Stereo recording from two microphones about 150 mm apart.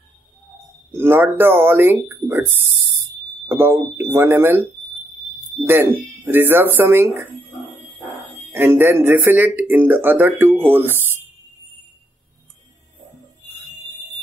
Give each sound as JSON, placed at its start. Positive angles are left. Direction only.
{"t": 0.9, "sound": "speech", "side_deg": -15}
{"t": 8.5, "sound": "speech", "side_deg": -15}